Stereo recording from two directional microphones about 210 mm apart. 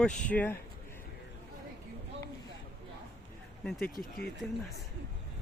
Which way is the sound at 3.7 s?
Centre (ahead or behind).